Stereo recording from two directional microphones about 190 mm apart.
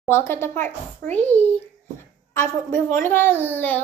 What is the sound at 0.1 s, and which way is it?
A woman's voice, 15° left (ahead or behind).